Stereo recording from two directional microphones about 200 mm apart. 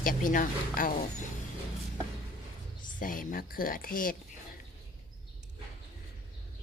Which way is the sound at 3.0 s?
45° left (ahead or behind).